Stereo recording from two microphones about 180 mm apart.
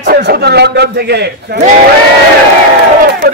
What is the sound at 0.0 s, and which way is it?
A man's voice, 65° right (ahead or behind).